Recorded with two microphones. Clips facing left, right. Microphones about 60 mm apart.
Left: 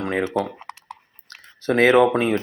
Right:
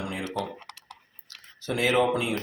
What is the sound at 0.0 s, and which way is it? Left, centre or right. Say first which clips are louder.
Speech: left 10 dB; left.